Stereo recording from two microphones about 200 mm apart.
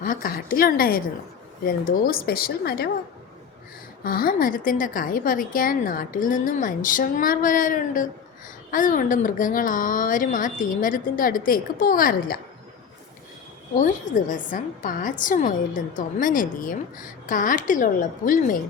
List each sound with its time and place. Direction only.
0.0 s a woman's voice: 45° left (ahead or behind)
4.0 s a woman's voice: 45° left (ahead or behind)
13.7 s a woman's voice: 40° left (ahead or behind)